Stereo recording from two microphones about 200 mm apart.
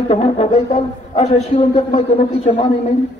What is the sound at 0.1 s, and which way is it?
Speech, 30° left (ahead or behind).